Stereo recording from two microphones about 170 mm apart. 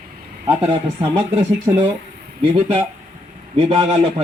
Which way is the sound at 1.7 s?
20° right (ahead or behind).